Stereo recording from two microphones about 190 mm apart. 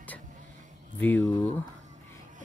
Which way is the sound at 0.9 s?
10° left (ahead or behind).